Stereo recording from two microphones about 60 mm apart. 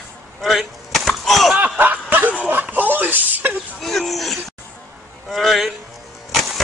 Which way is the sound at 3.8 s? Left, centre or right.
Centre.